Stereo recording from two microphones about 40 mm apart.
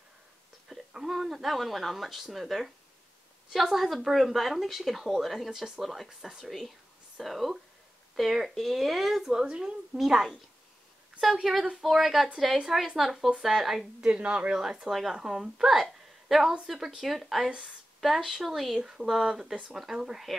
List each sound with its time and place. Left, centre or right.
0.7 s speech: centre
6.0 s speech: centre
6.4 s speech: centre
9.3 s speech: centre
9.9 s speech: centre
11.7 s speech: centre
14.0 s a woman's voice: right
14.6 s a woman's voice: centre
17.5 s a woman's voice: right
18.0 s speech: centre